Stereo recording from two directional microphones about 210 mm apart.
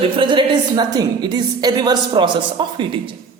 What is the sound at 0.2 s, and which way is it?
A woman's voice, 25° right (ahead or behind).